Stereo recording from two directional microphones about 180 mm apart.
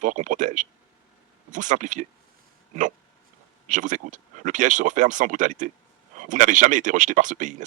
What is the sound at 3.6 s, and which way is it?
Speech, 45° right (ahead or behind).